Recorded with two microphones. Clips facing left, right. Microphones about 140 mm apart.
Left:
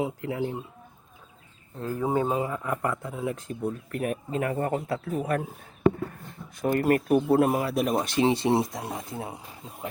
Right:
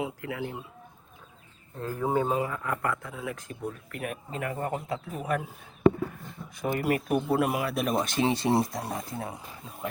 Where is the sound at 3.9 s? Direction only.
40° left (ahead or behind).